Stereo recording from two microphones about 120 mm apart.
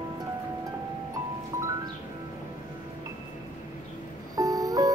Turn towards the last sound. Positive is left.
turn(degrees=-30)  # may be behind; listen again after turning